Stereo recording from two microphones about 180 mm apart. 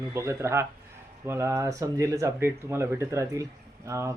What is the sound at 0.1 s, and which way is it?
Speech, 15° right (ahead or behind).